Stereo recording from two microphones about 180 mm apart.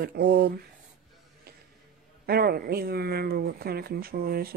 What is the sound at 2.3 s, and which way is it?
Speech, 60° right (ahead or behind).